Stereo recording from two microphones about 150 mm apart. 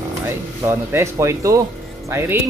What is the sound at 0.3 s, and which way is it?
Speech, 20° right (ahead or behind).